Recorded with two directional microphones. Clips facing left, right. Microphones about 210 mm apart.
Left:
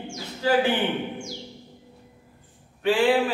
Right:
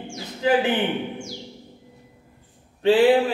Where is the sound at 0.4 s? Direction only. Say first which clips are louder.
Right 1 dB; 20° right (ahead or behind).